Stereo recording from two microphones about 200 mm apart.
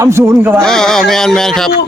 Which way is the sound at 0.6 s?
Centre (ahead or behind).